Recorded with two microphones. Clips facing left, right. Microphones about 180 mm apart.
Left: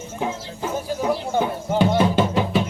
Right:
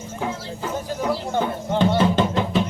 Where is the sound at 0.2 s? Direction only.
10° left (ahead or behind).